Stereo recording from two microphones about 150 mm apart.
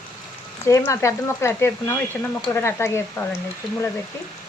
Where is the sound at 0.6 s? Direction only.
20° left (ahead or behind).